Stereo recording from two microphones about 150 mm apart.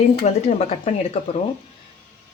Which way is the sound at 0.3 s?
45° left (ahead or behind).